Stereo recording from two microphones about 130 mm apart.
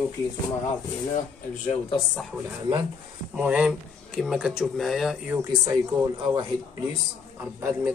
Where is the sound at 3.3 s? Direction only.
10° right (ahead or behind).